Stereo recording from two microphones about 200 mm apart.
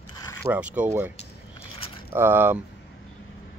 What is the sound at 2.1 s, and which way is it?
Speech, 10° right (ahead or behind).